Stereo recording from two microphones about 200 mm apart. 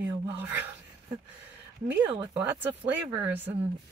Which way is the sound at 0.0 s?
10° right (ahead or behind).